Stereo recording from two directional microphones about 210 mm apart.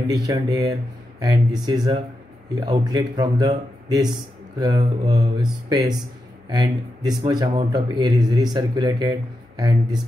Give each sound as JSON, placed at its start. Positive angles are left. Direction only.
{"t": 0.1, "sound": "speech", "side_deg": -15}